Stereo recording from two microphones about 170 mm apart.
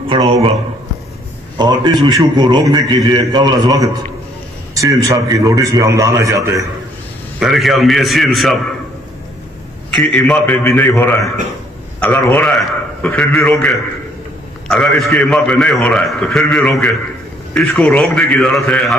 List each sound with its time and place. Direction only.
0.1 s a sound: 30° right (ahead or behind)
1.6 s a man's voice: 25° right (ahead or behind)
7.3 s a man's voice: centre (ahead or behind)
9.8 s a man's voice: 5° left (ahead or behind)